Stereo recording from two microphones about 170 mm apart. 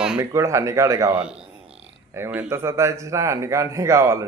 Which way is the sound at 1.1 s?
5° right (ahead or behind).